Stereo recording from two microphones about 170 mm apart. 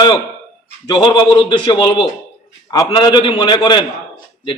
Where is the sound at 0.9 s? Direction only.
25° left (ahead or behind).